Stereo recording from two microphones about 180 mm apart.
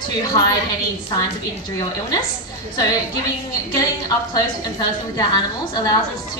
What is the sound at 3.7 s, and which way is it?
A woman's voice, 20° left (ahead or behind).